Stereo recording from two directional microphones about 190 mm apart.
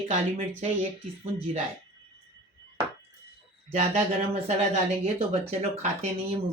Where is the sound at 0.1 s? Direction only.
30° right (ahead or behind).